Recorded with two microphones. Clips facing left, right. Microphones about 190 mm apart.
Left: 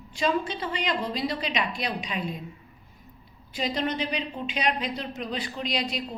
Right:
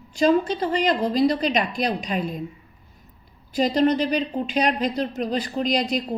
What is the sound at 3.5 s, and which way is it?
A woman's voice, 40° right (ahead or behind).